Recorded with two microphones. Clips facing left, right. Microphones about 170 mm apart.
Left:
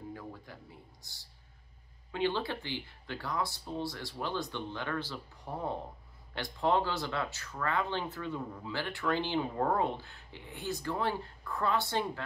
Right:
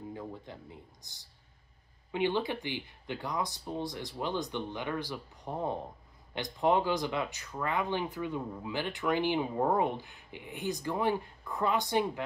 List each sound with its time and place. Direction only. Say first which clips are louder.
0.1 s speech: right 3 dB; 20° right (ahead or behind)